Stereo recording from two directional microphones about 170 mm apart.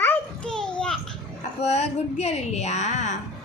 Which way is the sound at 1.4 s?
40° left (ahead or behind).